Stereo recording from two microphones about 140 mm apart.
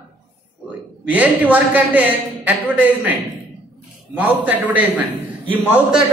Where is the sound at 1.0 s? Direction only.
10° right (ahead or behind).